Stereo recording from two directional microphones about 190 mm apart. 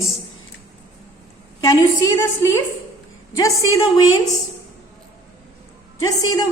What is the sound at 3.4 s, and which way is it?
Female singing, 20° left (ahead or behind).